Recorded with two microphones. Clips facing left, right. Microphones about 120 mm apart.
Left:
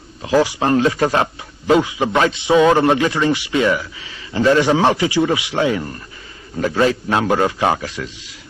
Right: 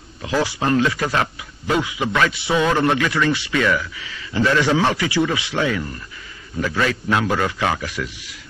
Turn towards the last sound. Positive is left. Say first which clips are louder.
# left 4 dB
turn(degrees=25)  # may be behind; listen again after turning